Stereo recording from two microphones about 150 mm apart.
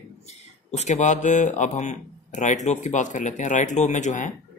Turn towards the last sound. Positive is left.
turn(degrees=55)  # may be behind; listen again after turning